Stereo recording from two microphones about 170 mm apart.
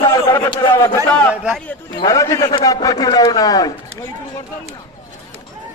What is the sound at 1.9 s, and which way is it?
A man's voice, 20° left (ahead or behind).